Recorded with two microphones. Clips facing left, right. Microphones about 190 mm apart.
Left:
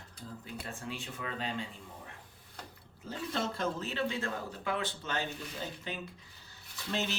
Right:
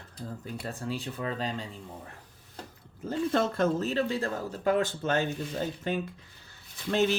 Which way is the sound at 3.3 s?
50° right (ahead or behind).